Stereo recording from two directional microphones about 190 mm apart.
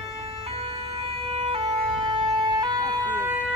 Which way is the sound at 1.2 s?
30° right (ahead or behind).